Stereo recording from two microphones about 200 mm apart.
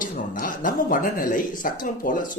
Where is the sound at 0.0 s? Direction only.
40° left (ahead or behind).